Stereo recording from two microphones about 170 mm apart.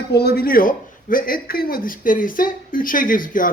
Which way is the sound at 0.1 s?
70° left (ahead or behind).